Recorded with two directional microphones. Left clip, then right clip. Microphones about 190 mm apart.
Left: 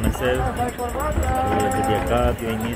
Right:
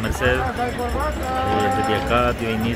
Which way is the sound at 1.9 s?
5° right (ahead or behind).